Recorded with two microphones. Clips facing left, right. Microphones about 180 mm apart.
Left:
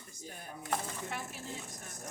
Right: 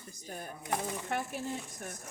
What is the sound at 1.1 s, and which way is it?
Speech, 55° right (ahead or behind).